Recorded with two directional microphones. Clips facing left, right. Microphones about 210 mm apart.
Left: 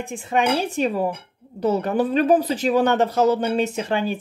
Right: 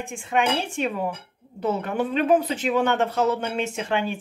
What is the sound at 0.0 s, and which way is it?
Speech, 35° left (ahead or behind).